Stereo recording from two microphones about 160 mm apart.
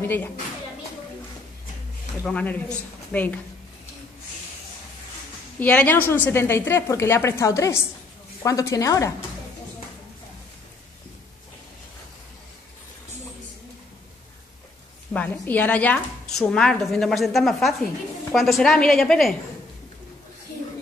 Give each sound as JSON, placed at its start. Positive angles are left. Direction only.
{"t": 0.0, "sound": "a woman's voice", "side_deg": 15}
{"t": 2.2, "sound": "a woman's voice", "side_deg": 10}
{"t": 5.6, "sound": "a woman's voice", "side_deg": 10}
{"t": 15.1, "sound": "a woman's voice", "side_deg": 10}